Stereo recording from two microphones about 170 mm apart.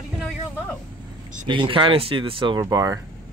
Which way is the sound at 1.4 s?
30° right (ahead or behind).